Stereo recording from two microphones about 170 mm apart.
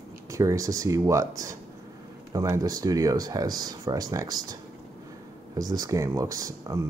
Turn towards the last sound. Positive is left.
turn(degrees=-20)  # may be behind; listen again after turning